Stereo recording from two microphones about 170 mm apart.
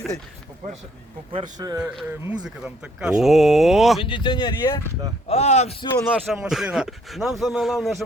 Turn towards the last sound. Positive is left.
turn(degrees=0)  # may be behind; listen again after turning